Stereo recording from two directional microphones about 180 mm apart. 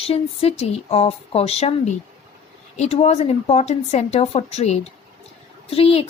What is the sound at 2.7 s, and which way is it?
Speech, 35° left (ahead or behind).